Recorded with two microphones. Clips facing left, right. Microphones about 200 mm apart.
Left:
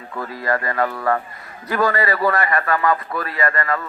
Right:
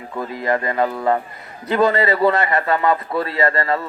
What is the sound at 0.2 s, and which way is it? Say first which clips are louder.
A man's voice: right 2 dB; 20° right (ahead or behind).